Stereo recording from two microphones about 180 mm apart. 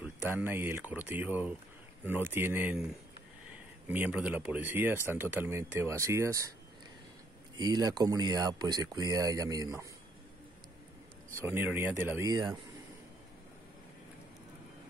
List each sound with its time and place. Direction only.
0.0 s speech: 10° right (ahead or behind)
7.5 s speech: 25° right (ahead or behind)
11.3 s speech: 10° right (ahead or behind)